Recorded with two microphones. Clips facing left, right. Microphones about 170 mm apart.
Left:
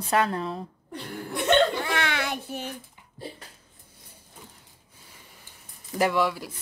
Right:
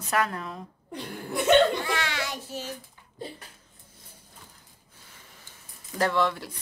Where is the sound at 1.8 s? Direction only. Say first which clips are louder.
Left 2 dB; 60° left (ahead or behind).